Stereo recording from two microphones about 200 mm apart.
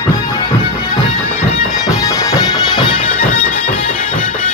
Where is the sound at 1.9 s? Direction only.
15° left (ahead or behind).